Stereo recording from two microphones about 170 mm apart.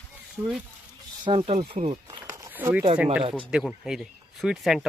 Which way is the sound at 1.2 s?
30° right (ahead or behind).